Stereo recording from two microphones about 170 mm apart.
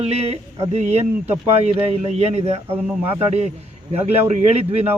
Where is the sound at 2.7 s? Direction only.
10° right (ahead or behind).